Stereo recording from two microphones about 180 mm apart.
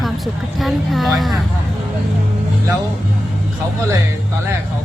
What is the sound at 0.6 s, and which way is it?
Speech, centre (ahead or behind).